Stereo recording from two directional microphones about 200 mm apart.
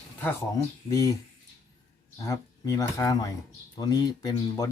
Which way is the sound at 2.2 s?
15° left (ahead or behind).